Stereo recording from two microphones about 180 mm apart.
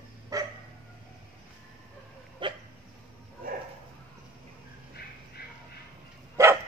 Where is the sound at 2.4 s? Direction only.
25° right (ahead or behind).